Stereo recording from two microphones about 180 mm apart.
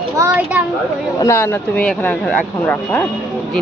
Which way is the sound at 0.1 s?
15° right (ahead or behind).